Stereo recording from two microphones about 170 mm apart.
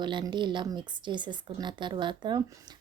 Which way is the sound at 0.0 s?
25° right (ahead or behind).